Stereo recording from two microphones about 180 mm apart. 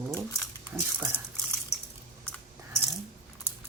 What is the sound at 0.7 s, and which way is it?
Speech, 15° right (ahead or behind).